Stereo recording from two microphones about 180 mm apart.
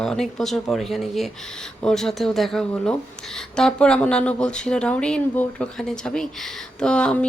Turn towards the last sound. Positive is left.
turn(degrees=5)  # may be behind; listen again after turning